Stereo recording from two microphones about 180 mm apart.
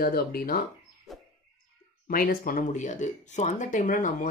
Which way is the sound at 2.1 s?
50° left (ahead or behind).